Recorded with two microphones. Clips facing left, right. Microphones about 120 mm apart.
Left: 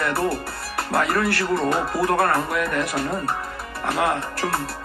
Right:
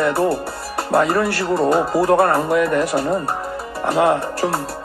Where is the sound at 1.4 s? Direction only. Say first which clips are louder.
Right 4 dB; 10° right (ahead or behind).